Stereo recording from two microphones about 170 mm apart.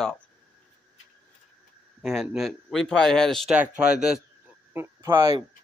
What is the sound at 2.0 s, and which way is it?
Speech, centre (ahead or behind).